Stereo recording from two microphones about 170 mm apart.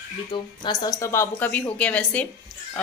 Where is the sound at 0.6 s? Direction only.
20° left (ahead or behind).